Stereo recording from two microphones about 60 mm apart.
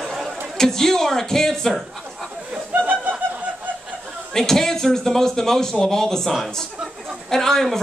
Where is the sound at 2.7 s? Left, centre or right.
Right.